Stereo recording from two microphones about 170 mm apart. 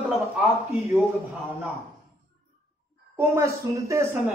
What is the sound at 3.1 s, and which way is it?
A man's voice, 15° right (ahead or behind).